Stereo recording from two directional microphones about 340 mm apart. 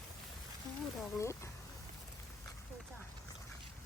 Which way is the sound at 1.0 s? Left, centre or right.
Centre.